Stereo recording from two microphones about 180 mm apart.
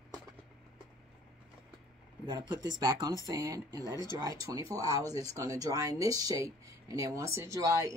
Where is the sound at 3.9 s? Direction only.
20° left (ahead or behind).